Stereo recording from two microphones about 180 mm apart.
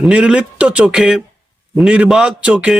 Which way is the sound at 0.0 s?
5° right (ahead or behind).